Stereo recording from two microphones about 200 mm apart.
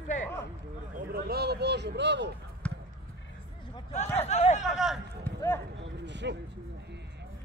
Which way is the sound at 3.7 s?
35° left (ahead or behind).